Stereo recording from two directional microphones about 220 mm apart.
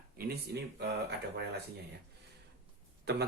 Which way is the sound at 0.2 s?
45° right (ahead or behind).